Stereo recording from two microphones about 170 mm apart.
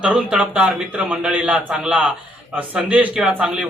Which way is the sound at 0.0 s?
5° right (ahead or behind).